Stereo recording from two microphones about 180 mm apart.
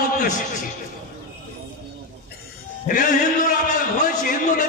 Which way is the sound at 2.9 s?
45° left (ahead or behind).